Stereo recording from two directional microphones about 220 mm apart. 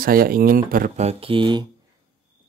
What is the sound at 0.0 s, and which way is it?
Speech, 40° right (ahead or behind).